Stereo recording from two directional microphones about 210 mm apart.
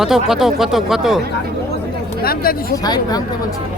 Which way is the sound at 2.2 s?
45° left (ahead or behind).